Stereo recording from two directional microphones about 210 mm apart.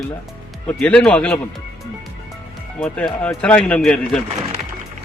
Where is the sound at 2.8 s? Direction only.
5° left (ahead or behind).